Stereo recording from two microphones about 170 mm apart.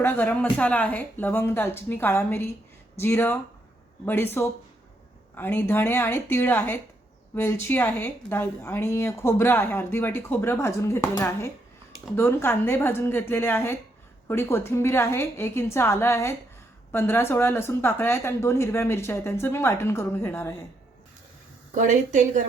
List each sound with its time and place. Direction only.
0.0 s a woman's voice: 10° left (ahead or behind)
21.8 s a woman's voice: 45° right (ahead or behind)